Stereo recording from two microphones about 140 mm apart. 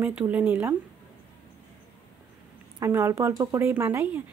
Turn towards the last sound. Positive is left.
turn(degrees=-15)  # may be behind; listen again after turning